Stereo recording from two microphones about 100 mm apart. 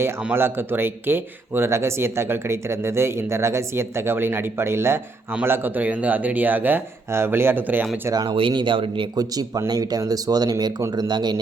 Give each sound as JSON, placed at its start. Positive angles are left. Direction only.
{"t": 0.3, "sound": "speech", "side_deg": -20}
{"t": 8.1, "sound": "speech", "side_deg": -40}
{"t": 8.4, "sound": "speech", "side_deg": -55}
{"t": 9.1, "sound": "speech", "side_deg": -40}